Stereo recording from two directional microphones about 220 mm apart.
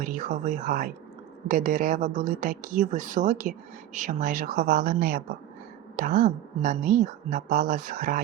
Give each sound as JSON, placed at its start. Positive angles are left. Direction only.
{"t": 0.0, "sound": "speech", "side_deg": -35}